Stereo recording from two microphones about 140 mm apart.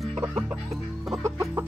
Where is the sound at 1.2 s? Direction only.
20° right (ahead or behind).